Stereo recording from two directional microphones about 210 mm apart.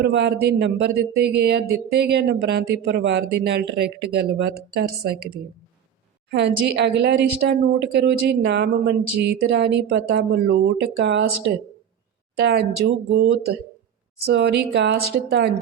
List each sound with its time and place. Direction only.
0.0 s speech: 55° right (ahead or behind)
6.3 s speech: 55° right (ahead or behind)
10.9 s speech: 60° right (ahead or behind)
12.4 s speech: 50° right (ahead or behind)